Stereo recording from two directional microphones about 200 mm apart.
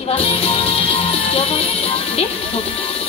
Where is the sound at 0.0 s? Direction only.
30° left (ahead or behind).